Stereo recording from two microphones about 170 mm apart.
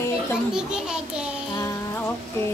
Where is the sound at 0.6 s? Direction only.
5° right (ahead or behind).